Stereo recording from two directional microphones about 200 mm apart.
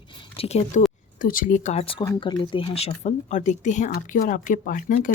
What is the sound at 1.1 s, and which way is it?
Speech, 45° left (ahead or behind).